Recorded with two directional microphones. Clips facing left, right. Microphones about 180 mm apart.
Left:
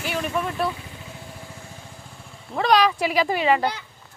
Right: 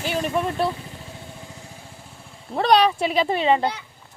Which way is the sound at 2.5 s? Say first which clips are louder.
Right 2 dB; 35° right (ahead or behind).